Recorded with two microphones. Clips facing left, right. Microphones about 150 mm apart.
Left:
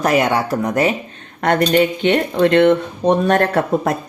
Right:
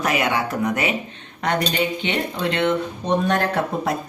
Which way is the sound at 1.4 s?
55° left (ahead or behind).